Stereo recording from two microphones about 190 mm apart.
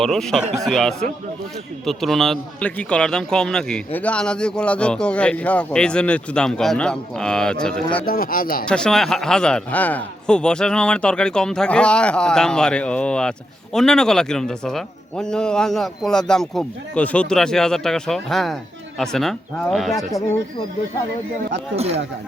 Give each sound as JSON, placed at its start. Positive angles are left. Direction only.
{"t": 0.0, "sound": "a man's voice", "side_deg": 0}
{"t": 8.0, "sound": "speech", "side_deg": 50}
{"t": 8.6, "sound": "a man's voice", "side_deg": 5}
{"t": 21.8, "sound": "speech", "side_deg": -35}